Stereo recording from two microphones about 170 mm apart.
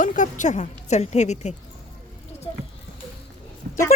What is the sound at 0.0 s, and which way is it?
Speech, 50° left (ahead or behind).